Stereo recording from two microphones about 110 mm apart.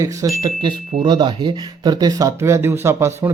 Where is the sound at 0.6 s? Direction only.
45° right (ahead or behind); by 3.3 s 25° right (ahead or behind).